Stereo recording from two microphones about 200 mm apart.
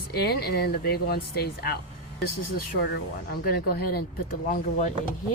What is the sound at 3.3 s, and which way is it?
Speech, 50° left (ahead or behind).